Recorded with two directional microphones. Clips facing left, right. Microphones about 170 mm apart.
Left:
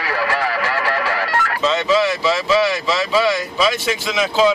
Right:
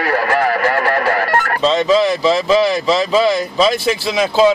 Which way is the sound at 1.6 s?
35° right (ahead or behind).